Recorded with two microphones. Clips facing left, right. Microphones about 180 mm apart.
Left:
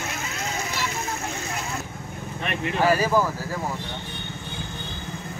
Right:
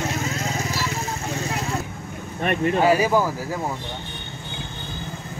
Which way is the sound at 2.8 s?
20° right (ahead or behind).